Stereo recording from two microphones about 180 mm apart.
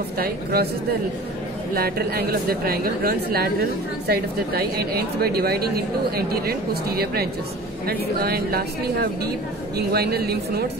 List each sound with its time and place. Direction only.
0.2 s a woman's voice: 55° right (ahead or behind)
1.8 s a woman's voice: 60° right (ahead or behind)